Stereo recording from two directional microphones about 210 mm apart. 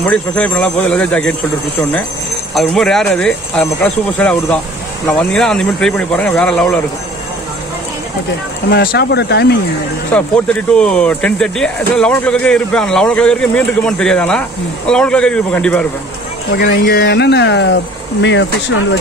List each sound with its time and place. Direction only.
0.0 s speech: 5° left (ahead or behind)
2.5 s speech: centre (ahead or behind)
8.6 s speech: 50° left (ahead or behind)
10.1 s speech: 5° left (ahead or behind)
16.5 s speech: 50° left (ahead or behind)